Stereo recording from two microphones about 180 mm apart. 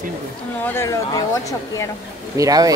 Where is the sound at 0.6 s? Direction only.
15° left (ahead or behind).